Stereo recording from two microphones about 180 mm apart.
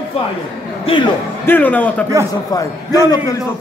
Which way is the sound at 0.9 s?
30° left (ahead or behind).